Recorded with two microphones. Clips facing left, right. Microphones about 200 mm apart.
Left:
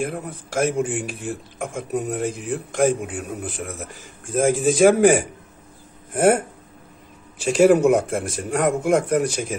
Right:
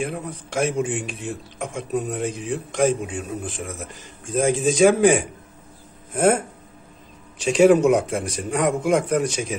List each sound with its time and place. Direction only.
0.0 s speech: centre (ahead or behind)
7.4 s speech: 5° left (ahead or behind)
9.2 s speech: 55° left (ahead or behind)